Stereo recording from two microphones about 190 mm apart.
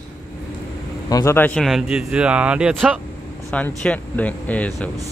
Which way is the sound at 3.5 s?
5° left (ahead or behind).